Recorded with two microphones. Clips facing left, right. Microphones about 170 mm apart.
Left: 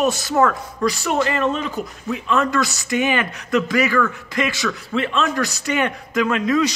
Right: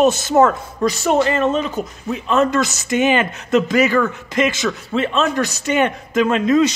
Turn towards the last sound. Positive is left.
turn(degrees=-25)  # may be behind; listen again after turning